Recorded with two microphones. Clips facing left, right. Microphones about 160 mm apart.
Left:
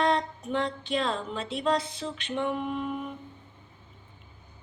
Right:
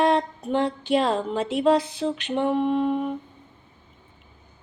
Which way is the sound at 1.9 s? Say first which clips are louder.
Right 8 dB; 65° right (ahead or behind).